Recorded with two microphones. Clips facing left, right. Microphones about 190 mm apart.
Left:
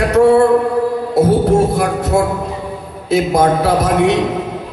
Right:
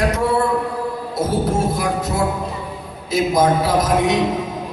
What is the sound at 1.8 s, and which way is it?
A man's voice, 65° left (ahead or behind).